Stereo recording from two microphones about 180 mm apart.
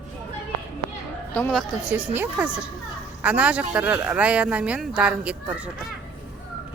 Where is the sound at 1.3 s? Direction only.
10° left (ahead or behind).